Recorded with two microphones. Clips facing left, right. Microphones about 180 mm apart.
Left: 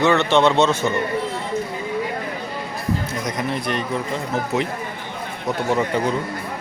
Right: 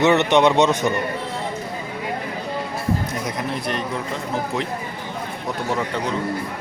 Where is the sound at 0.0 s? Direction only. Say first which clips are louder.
Right 1 dB; 20° right (ahead or behind).